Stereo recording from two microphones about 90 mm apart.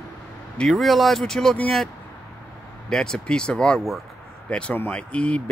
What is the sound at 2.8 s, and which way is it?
Speech, 5° left (ahead or behind).